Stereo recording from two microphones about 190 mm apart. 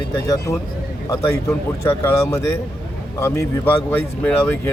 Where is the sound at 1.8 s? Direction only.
15° left (ahead or behind).